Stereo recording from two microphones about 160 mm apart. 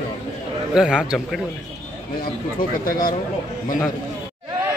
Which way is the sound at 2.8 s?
60° left (ahead or behind).